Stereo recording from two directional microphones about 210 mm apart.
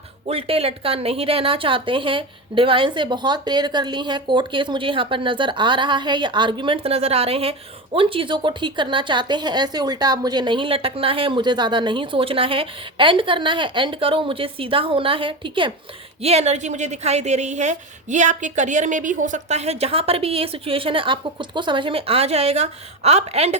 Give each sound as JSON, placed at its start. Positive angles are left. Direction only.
{"t": 0.3, "sound": "a woman's voice", "side_deg": -25}